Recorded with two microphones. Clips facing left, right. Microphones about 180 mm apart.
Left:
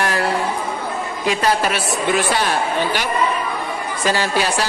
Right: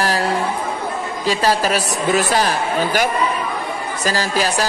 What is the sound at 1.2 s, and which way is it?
Speech, 35° right (ahead or behind).